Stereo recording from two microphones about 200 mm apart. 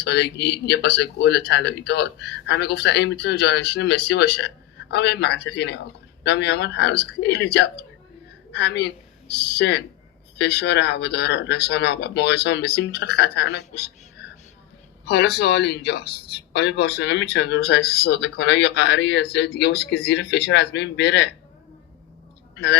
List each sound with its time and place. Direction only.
0.0 s a man's voice: 60° left (ahead or behind)
22.5 s speech: 60° left (ahead or behind)